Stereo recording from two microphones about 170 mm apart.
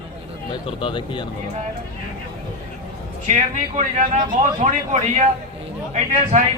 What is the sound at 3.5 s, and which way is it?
A man's voice, 50° right (ahead or behind).